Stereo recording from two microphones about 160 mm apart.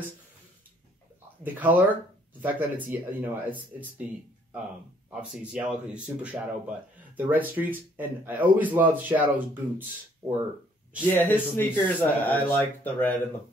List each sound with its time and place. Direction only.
1.4 s speech: 10° right (ahead or behind)
5.1 s speech: 5° right (ahead or behind)
11.1 s speech: 15° left (ahead or behind)